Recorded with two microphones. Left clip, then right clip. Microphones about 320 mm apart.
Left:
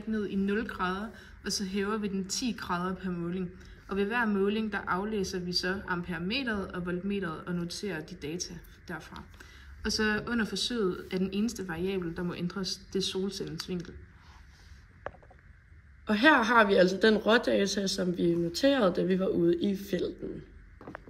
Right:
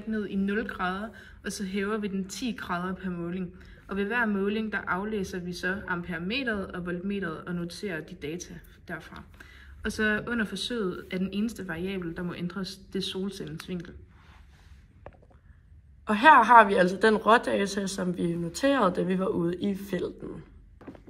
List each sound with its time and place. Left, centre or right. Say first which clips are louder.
0.1 s speech: right 1 dB; centre
9.4 s speech: right 3 dB; centre
15.0 s a sound: left 7 dB; right
16.1 s speech: right 6 dB; centre